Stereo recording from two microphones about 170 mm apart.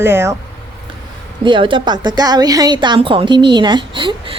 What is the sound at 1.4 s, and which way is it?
A woman's voice, 30° right (ahead or behind).